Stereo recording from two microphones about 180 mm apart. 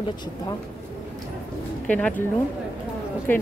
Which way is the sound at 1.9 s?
10° left (ahead or behind).